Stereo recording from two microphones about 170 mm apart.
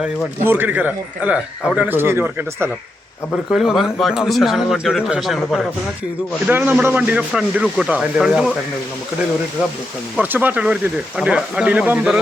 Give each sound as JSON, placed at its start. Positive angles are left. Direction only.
{"t": 0.0, "sound": "a man's voice", "side_deg": -10}
{"t": 3.5, "sound": "speech", "side_deg": 0}
{"t": 6.5, "sound": "a man's voice", "side_deg": -10}
{"t": 10.2, "sound": "a man's voice", "side_deg": -10}